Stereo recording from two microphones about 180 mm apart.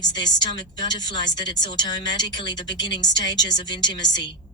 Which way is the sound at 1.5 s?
25° left (ahead or behind).